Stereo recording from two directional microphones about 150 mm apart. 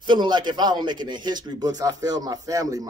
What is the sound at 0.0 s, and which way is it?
A man's voice, 30° right (ahead or behind).